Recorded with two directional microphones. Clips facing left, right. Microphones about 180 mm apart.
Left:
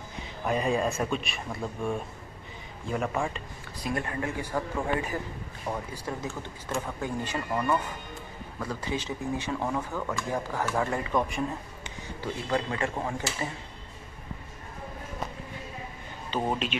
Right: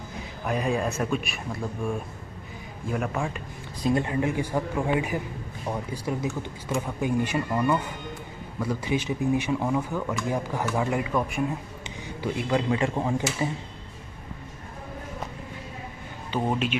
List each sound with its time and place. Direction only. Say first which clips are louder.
0.5 s speech: even; 5° right (ahead or behind)
3.8 s a man's voice: right 7 dB; 20° right (ahead or behind)
16.3 s speech: right 2 dB; 10° right (ahead or behind)